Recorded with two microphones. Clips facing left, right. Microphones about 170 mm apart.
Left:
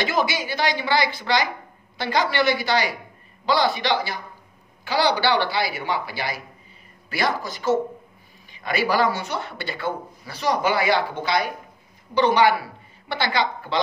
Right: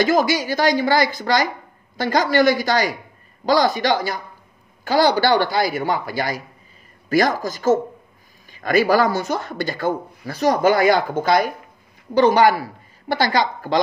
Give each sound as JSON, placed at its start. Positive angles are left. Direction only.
{"t": 0.0, "sound": "a woman's voice", "side_deg": -45}